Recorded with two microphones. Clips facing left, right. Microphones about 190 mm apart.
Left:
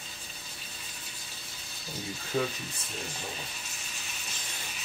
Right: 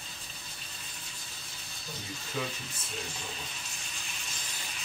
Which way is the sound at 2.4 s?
45° left (ahead or behind).